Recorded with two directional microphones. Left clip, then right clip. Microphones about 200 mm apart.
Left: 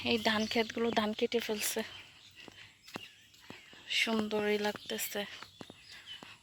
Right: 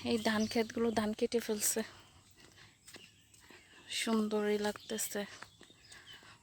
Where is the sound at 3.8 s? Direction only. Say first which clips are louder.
Left 4 dB; 25° right (ahead or behind).